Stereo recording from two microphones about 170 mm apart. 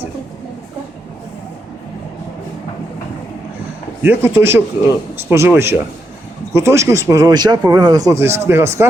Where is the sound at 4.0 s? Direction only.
10° right (ahead or behind).